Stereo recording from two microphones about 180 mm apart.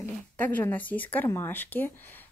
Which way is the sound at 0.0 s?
10° left (ahead or behind).